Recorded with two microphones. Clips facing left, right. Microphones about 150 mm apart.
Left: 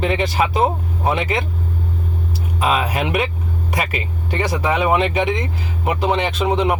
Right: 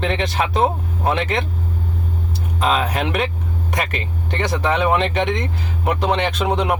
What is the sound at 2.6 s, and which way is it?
Speech, 5° left (ahead or behind).